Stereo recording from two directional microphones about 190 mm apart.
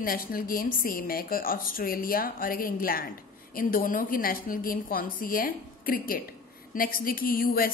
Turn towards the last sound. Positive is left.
turn(degrees=50)  # may be behind; listen again after turning